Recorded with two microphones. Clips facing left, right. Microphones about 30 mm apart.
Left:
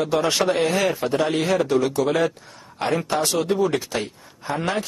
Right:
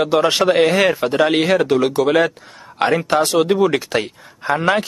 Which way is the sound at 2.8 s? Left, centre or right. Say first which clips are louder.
Right 6 dB; right.